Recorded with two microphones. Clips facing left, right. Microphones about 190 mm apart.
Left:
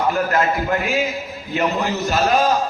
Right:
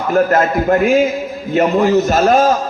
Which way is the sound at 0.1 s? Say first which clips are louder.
Right 6 dB; 45° right (ahead or behind).